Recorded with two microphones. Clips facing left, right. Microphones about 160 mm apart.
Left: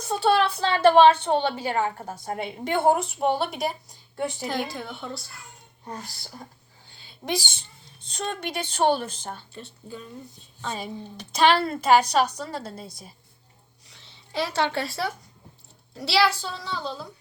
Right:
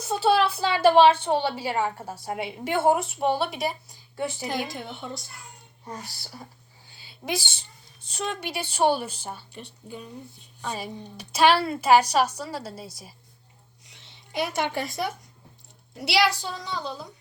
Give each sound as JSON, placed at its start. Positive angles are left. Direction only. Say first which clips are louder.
{"t": 0.0, "sound": "a woman's voice", "louder": "even", "side_deg": -5}
{"t": 4.4, "sound": "a woman's voice", "louder": "left 1 dB", "side_deg": -15}
{"t": 6.0, "sound": "speech", "louder": "left 1 dB", "side_deg": -5}
{"t": 7.2, "sound": "a woman's voice", "louder": "left 1 dB", "side_deg": 10}
{"t": 8.0, "sound": "a woman's voice", "louder": "even", "side_deg": -10}
{"t": 13.8, "sound": "a sound", "louder": "even", "side_deg": -20}
{"t": 16.0, "sound": "a woman's voice", "louder": "left 1 dB", "side_deg": -15}